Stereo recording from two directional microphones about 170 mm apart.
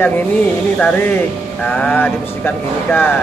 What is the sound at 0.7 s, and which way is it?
Speech, 10° left (ahead or behind).